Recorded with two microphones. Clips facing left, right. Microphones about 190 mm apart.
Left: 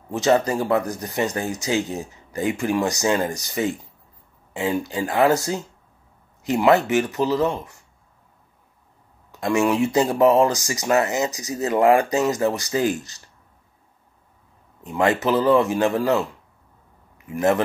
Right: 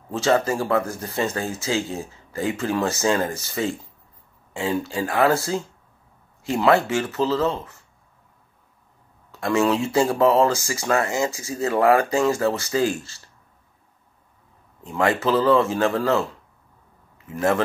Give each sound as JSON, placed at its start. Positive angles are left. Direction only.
{"t": 0.1, "sound": "speech", "side_deg": 15}
{"t": 9.3, "sound": "speech", "side_deg": 20}
{"t": 14.9, "sound": "speech", "side_deg": 20}